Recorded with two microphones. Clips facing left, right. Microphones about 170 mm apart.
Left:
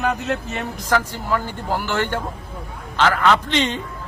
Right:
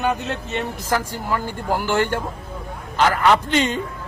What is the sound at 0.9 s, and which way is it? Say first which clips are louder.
A man's voice: left 3 dB; 10° right (ahead or behind).